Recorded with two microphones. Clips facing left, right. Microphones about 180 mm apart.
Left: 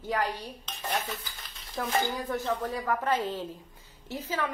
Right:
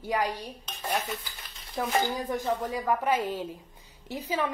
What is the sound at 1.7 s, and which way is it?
A woman's voice, 20° right (ahead or behind).